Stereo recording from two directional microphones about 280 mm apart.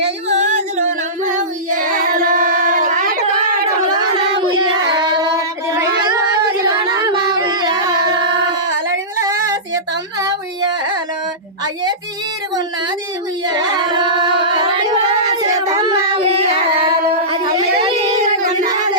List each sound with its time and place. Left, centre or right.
0.0 s singing: right
3.9 s child singing: centre
6.6 s singing: centre
9.2 s child singing: centre
10.2 s carnatic music: centre
11.6 s child singing: centre
13.5 s singing: centre
17.8 s child singing: right